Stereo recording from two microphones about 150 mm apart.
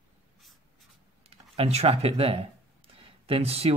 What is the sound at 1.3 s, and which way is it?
Speech, 45° right (ahead or behind).